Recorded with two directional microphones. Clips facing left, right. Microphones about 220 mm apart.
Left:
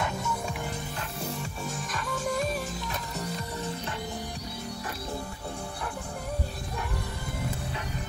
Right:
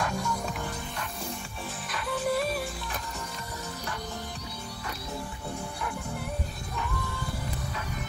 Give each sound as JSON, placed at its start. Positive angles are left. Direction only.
{"t": 0.0, "sound": "music", "side_deg": 5}
{"t": 1.9, "sound": "music", "side_deg": 45}